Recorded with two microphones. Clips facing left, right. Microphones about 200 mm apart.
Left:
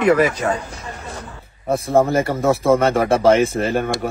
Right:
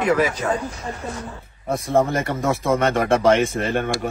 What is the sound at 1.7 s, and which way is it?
Speech, 30° left (ahead or behind).